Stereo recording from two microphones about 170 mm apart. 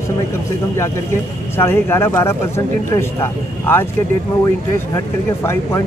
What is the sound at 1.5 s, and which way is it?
Speech, 15° left (ahead or behind).